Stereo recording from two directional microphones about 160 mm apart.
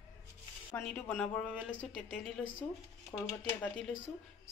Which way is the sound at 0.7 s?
5° left (ahead or behind).